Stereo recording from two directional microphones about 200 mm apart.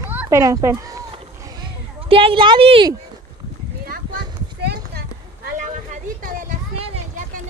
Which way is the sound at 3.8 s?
50° right (ahead or behind).